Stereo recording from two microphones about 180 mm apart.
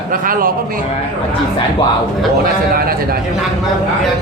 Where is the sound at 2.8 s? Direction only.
55° right (ahead or behind).